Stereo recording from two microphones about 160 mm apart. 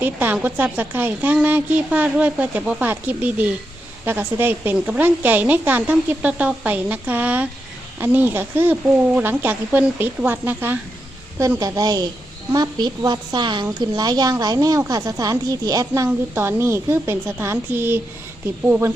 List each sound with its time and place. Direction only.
0.0 s a woman's voice: 10° right (ahead or behind)